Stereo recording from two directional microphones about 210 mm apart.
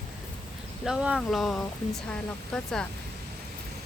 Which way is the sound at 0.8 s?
5° right (ahead or behind).